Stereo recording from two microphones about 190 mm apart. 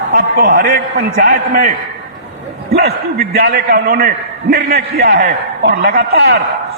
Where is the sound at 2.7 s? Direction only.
55° right (ahead or behind).